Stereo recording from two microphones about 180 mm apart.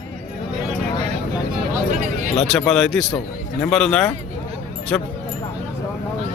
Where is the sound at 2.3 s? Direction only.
Centre (ahead or behind).